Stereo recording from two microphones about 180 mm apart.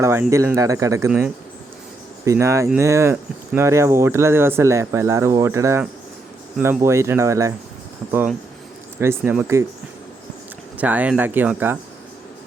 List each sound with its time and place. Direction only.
0.0 s speech: 15° right (ahead or behind)
9.0 s speech: 15° right (ahead or behind)
10.8 s speech: 10° right (ahead or behind)